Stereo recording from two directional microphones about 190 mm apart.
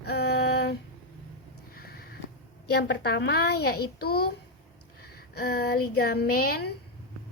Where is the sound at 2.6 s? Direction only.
60° left (ahead or behind).